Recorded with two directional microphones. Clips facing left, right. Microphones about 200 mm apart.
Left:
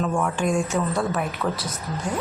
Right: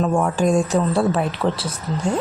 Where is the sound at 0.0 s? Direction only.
35° right (ahead or behind).